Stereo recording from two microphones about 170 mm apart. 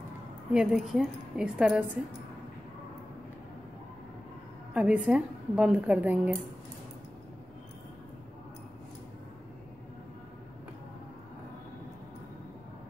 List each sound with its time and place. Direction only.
0.5 s a woman's voice: 5° right (ahead or behind)
4.7 s a woman's voice: 5° right (ahead or behind)